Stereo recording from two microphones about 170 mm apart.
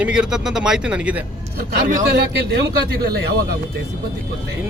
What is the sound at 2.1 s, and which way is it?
Speech, 80° right.